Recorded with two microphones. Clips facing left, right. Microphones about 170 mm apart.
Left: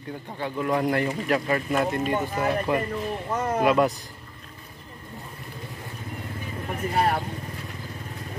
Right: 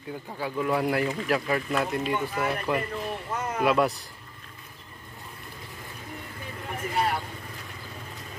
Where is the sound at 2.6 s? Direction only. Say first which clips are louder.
Left 3 dB; centre (ahead or behind).